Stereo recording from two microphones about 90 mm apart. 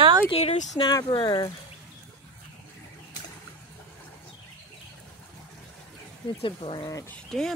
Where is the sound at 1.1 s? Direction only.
55° left (ahead or behind).